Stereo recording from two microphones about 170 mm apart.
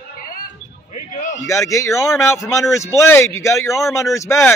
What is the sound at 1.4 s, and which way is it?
A man's voice, 20° left (ahead or behind).